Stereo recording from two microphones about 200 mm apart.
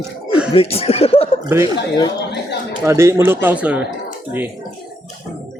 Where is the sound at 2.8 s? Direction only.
15° right (ahead or behind).